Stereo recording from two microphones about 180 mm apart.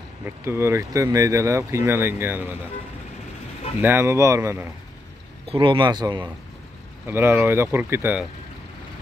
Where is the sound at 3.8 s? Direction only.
15° right (ahead or behind).